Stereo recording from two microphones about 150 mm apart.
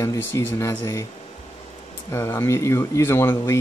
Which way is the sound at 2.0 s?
15° left (ahead or behind).